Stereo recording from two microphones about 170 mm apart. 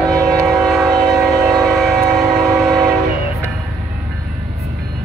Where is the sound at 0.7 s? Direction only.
25° right (ahead or behind).